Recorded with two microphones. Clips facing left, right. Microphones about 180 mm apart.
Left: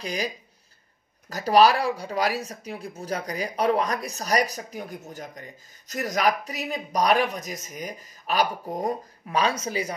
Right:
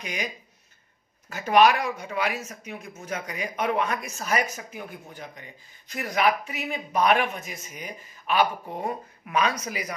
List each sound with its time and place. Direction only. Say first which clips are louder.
0.0 s speech: left 4 dB; 35° left (ahead or behind)
1.3 s speech: left 1 dB; 35° left (ahead or behind)